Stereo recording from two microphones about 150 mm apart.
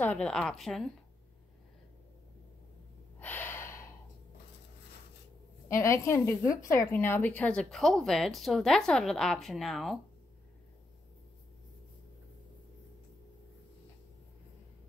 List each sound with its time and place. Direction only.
0.0 s a woman's voice: 10° left (ahead or behind)
3.2 s gasp: 10° left (ahead or behind)
5.7 s a woman's voice: 20° left (ahead or behind); by 9.9 s centre (ahead or behind)